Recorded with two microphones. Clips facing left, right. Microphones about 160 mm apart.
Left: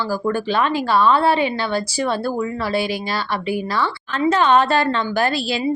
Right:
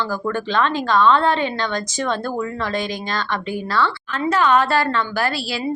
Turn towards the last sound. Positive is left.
turn(degrees=20)  # may be behind; listen again after turning